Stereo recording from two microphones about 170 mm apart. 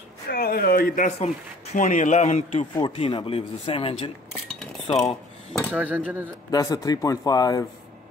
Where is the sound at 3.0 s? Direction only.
30° left (ahead or behind).